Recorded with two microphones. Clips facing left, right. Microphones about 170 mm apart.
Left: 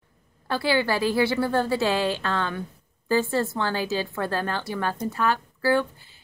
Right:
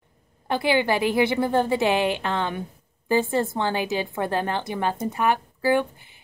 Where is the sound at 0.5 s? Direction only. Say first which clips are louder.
Right 2 dB; 20° right (ahead or behind).